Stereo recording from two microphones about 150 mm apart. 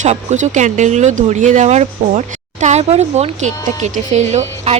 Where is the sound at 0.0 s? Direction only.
50° right (ahead or behind).